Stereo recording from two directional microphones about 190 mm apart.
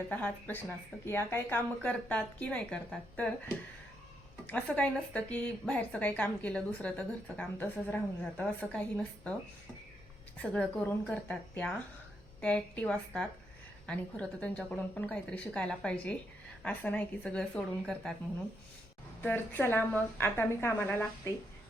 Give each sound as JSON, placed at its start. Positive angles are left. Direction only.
{"t": 0.1, "sound": "a woman's voice", "side_deg": 10}
{"t": 4.4, "sound": "a woman's voice", "side_deg": 5}
{"t": 10.3, "sound": "a woman's voice", "side_deg": 5}
{"t": 19.2, "sound": "a woman's voice", "side_deg": 10}